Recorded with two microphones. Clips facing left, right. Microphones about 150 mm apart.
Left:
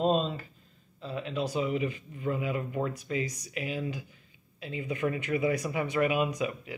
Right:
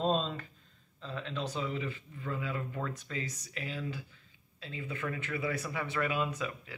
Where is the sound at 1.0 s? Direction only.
10° left (ahead or behind).